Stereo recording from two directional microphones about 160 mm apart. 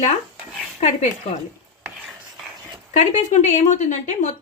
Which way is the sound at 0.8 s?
45° left (ahead or behind).